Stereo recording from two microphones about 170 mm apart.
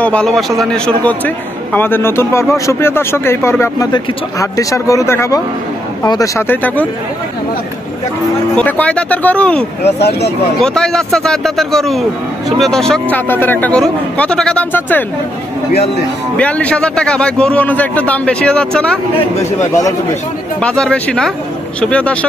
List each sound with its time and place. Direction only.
0.0 s a man's voice: 5° left (ahead or behind)
8.5 s a man's voice: 10° left (ahead or behind)
9.9 s speech: 75° left (ahead or behind)
10.6 s a man's voice: 5° left (ahead or behind)
16.3 s a man's voice: 10° left (ahead or behind)
20.6 s a man's voice: 5° left (ahead or behind)